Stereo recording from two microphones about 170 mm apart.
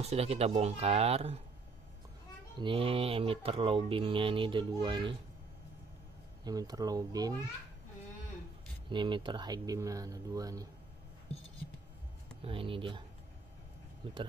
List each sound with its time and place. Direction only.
0.0 s speech: 40° right (ahead or behind)
2.6 s speech: 30° right (ahead or behind)
6.4 s speech: 20° right (ahead or behind)
8.8 s speech: 30° right (ahead or behind)
12.4 s speech: 30° right (ahead or behind)
14.0 s speech: 25° right (ahead or behind)